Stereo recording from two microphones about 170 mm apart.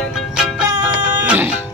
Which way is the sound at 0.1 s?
5° right (ahead or behind).